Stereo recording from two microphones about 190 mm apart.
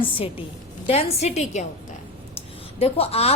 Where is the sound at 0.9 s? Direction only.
35° left (ahead or behind).